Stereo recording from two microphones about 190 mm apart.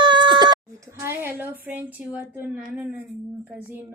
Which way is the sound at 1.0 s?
10° right (ahead or behind).